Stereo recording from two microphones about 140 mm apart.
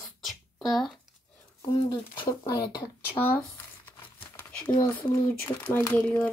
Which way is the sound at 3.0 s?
15° left (ahead or behind).